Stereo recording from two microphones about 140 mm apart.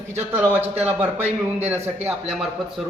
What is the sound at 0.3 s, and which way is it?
Speech, 15° right (ahead or behind).